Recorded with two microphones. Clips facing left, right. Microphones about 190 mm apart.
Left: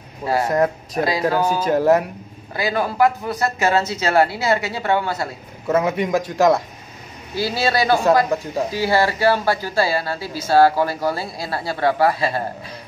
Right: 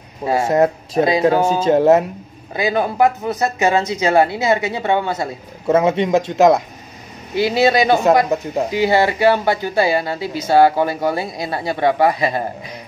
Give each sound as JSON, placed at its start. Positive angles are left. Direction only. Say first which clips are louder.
{"t": 0.2, "sound": "speech", "louder": "right 3 dB", "side_deg": -25}